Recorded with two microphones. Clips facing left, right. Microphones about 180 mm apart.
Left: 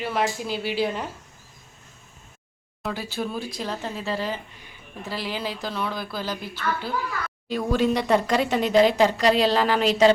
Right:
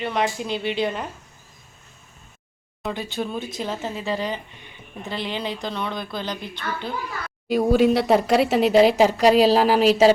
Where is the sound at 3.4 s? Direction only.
20° right (ahead or behind).